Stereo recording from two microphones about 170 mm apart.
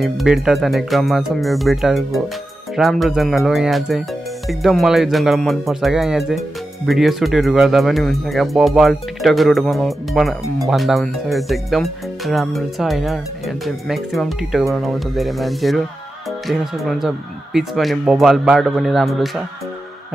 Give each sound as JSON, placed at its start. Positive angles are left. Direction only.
{"t": 0.0, "sound": "speech", "side_deg": 0}